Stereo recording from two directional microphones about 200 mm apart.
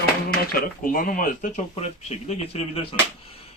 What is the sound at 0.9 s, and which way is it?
Speech, 45° left (ahead or behind).